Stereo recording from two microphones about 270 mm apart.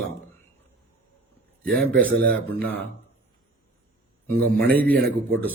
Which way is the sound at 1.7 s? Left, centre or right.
Centre.